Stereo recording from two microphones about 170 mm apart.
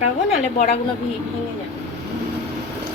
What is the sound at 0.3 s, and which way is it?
Speech, 40° left (ahead or behind).